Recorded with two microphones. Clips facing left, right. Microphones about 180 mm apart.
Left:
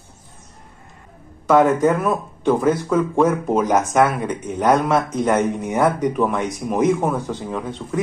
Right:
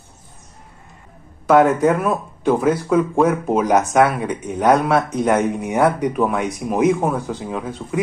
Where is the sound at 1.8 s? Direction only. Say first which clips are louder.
Right 1 dB; 5° right (ahead or behind).